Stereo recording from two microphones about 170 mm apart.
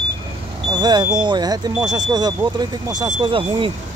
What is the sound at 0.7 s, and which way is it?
Speech, 25° right (ahead or behind).